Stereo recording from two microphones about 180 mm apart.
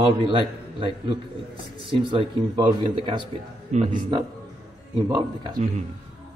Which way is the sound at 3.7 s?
40° right (ahead or behind).